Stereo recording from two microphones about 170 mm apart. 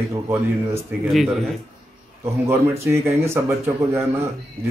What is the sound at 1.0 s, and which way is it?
Speech, centre (ahead or behind).